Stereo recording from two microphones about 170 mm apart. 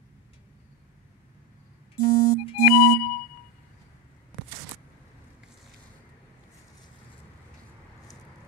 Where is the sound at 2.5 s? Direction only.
55° left (ahead or behind).